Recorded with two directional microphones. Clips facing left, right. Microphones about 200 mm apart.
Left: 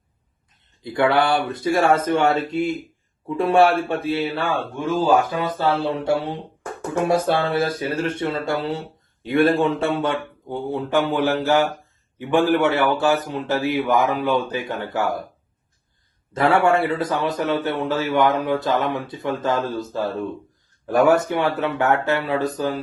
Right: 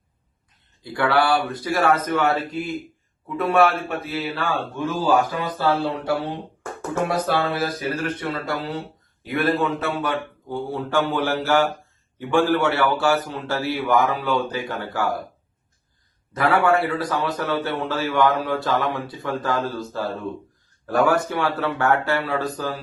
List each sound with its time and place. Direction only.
0.8 s a man's voice: 20° left (ahead or behind)
16.3 s a man's voice: 25° left (ahead or behind)